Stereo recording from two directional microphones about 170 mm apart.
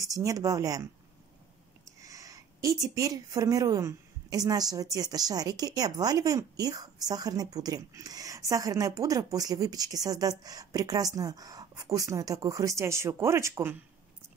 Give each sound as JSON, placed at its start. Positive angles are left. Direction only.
{"t": 0.0, "sound": "a woman's voice", "side_deg": -20}
{"t": 2.0, "sound": "a woman's voice", "side_deg": -20}